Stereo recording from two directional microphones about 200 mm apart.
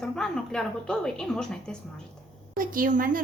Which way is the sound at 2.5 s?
45° right (ahead or behind).